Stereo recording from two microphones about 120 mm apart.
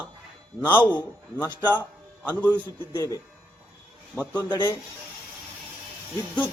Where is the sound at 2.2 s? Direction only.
15° left (ahead or behind).